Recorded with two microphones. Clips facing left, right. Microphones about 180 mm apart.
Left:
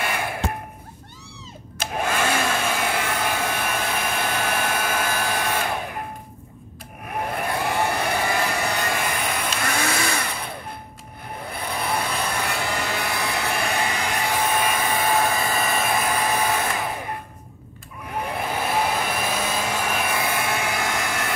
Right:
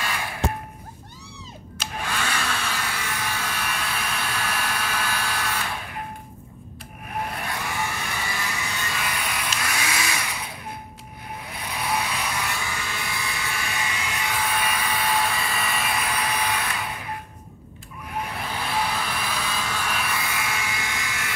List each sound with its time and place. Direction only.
0.0 s a sound: 55° left (ahead or behind)
1.8 s hair dryer: 45° left (ahead or behind)
7.2 s vehicle: 55° left (ahead or behind)
12.1 s vehicle: 55° left (ahead or behind)
13.8 s vehicle: 40° left (ahead or behind)
18.4 s vehicle: 50° left (ahead or behind)